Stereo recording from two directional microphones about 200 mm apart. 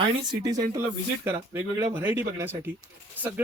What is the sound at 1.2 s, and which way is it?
Speech, 15° right (ahead or behind).